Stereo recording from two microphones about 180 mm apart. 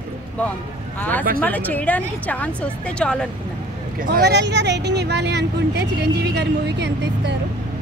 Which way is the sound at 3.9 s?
60° right (ahead or behind).